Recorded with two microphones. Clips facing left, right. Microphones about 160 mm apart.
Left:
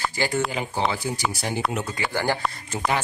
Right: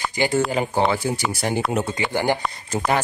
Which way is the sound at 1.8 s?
20° right (ahead or behind).